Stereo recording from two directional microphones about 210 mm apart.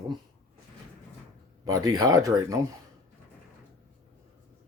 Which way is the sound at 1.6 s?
15° right (ahead or behind).